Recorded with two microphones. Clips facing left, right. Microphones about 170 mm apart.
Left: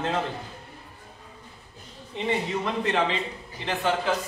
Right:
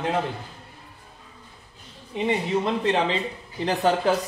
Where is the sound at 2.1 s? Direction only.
15° right (ahead or behind).